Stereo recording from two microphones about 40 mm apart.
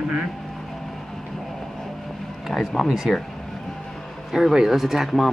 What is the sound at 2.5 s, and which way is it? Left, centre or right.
Speech, centre.